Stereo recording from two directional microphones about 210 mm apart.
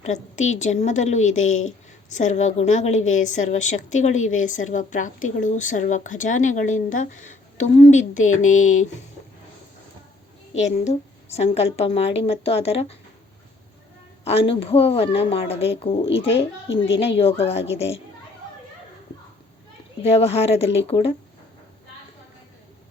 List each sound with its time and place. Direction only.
0.0 s a woman's voice: 35° left (ahead or behind)
10.8 s a woman's voice: 30° left (ahead or behind)
14.3 s a woman's voice: 25° left (ahead or behind)
20.0 s a woman's voice: 30° left (ahead or behind)